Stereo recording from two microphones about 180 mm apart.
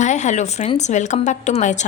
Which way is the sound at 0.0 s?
40° left (ahead or behind).